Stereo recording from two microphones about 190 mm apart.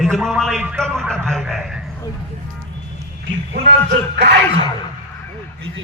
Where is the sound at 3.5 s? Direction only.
60° right (ahead or behind).